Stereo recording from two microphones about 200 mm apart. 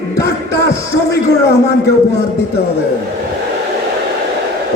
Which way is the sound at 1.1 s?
55° left (ahead or behind).